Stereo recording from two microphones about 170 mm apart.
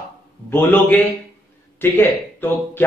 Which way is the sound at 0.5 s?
10° left (ahead or behind).